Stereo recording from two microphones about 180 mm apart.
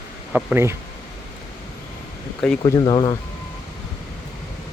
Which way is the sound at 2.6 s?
25° left (ahead or behind).